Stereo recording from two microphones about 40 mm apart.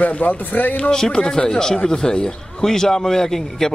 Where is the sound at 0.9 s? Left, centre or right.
Centre.